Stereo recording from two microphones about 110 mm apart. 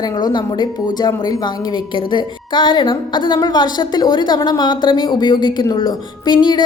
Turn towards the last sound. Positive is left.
turn(degrees=40)  # may be behind; listen again after turning